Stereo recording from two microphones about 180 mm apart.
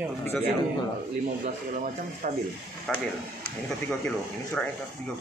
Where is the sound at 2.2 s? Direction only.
50° right (ahead or behind).